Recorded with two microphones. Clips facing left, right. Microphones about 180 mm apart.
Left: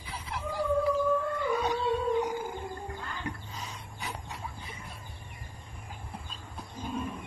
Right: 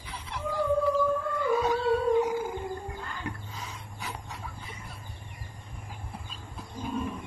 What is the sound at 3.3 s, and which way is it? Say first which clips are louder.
Dog: even; centre (ahead or behind).